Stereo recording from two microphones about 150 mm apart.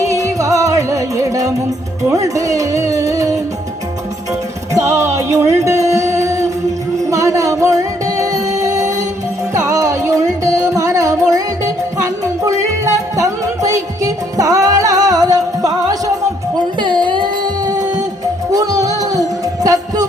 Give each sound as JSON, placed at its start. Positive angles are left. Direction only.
{"t": 0.0, "sound": "music", "side_deg": -20}
{"t": 4.7, "sound": "music", "side_deg": -20}